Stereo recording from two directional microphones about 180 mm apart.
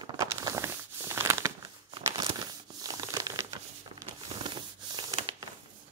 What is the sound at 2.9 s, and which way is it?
Crumpling, 20° right (ahead or behind).